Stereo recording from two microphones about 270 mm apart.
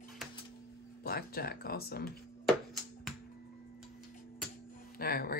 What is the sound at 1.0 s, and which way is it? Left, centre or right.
Speech, left.